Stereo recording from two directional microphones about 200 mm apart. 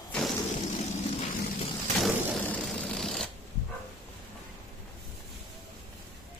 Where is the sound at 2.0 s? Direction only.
5° left (ahead or behind).